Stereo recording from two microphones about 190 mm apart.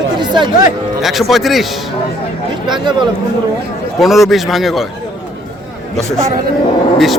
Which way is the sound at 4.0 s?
Centre (ahead or behind).